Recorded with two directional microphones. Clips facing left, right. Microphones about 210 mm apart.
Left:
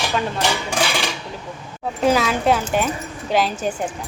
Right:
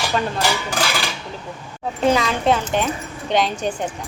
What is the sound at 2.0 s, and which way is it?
A woman's voice, 5° left (ahead or behind).